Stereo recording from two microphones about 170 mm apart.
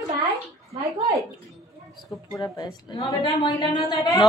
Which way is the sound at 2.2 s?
20° left (ahead or behind).